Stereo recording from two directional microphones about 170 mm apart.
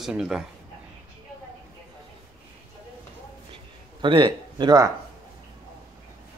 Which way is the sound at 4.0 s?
30° right (ahead or behind).